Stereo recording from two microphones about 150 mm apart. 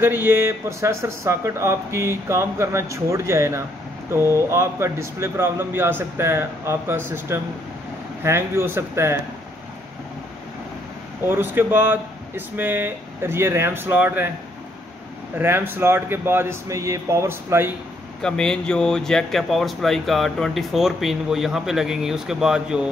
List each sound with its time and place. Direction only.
0.0 s speech: 15° right (ahead or behind)
11.2 s speech: 15° right (ahead or behind)
15.3 s speech: 15° right (ahead or behind)
18.2 s speech: 5° left (ahead or behind)